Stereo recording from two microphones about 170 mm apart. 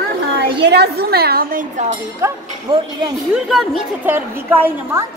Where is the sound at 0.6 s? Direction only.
80° right; by 2.0 s 45° right (ahead or behind).